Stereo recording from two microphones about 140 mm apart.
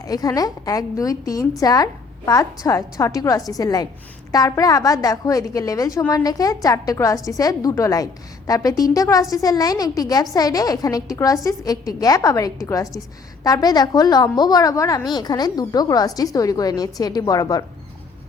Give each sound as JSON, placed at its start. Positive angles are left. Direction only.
{"t": 0.0, "sound": "a woman's voice", "side_deg": 25}